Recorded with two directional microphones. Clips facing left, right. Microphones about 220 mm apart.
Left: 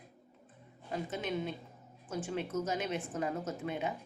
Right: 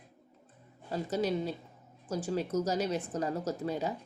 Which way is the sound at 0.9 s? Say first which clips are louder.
Right 5 dB; 40° right (ahead or behind).